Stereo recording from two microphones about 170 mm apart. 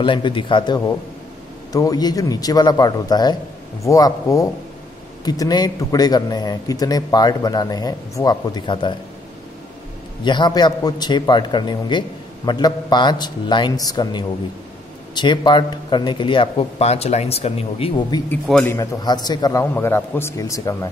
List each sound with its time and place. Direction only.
0.0 s a man's voice: 30° left (ahead or behind)
10.2 s a man's voice: 25° left (ahead or behind)
18.3 s a man's voice: 10° left (ahead or behind)
18.8 s a man's voice: 20° left (ahead or behind)